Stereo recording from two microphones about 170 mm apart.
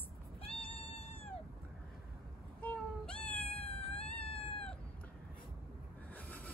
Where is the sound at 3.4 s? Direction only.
35° left (ahead or behind).